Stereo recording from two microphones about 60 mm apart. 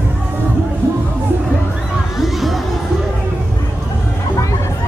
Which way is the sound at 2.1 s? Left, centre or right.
Centre.